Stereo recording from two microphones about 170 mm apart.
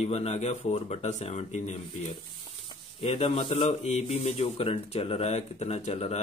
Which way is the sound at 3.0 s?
35° left (ahead or behind).